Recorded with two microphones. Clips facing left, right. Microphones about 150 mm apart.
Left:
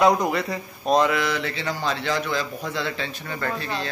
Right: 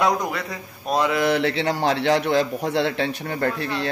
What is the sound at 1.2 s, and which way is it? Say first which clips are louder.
A man's voice: right 6 dB; 65° right (ahead or behind).